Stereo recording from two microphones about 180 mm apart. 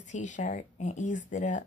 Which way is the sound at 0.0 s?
40° left (ahead or behind).